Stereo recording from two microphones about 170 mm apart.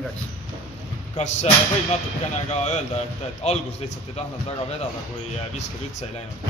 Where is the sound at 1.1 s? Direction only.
40° left (ahead or behind).